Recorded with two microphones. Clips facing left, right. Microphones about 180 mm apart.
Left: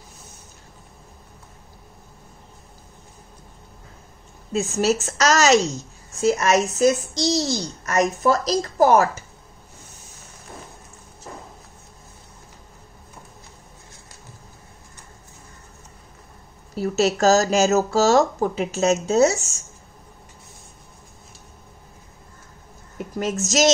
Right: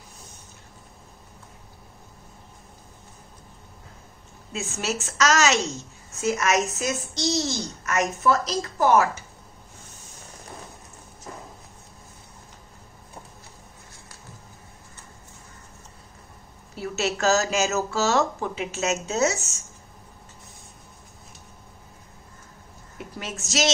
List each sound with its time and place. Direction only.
4.5 s a woman's voice: 35° left (ahead or behind)
16.7 s a woman's voice: 40° left (ahead or behind)
23.1 s a woman's voice: 45° left (ahead or behind)